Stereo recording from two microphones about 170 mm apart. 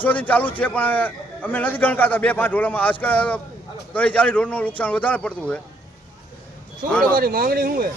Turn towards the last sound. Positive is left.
turn(degrees=-60)  # may be behind; listen again after turning